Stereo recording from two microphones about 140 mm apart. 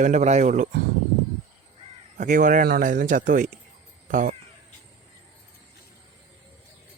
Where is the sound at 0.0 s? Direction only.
60° right (ahead or behind).